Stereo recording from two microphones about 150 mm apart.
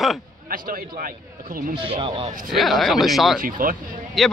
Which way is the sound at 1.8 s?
35° right (ahead or behind).